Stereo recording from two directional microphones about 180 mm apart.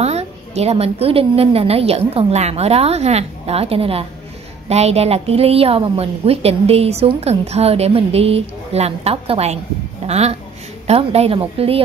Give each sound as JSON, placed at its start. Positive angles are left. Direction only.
{"t": 0.0, "sound": "a woman's voice", "side_deg": -35}